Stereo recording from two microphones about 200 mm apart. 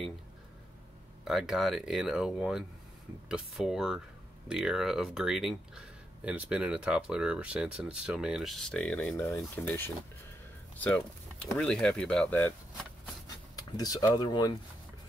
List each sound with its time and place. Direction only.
1.2 s speech: centre (ahead or behind)
11.5 s speech: 5° left (ahead or behind)
13.6 s speech: 20° left (ahead or behind)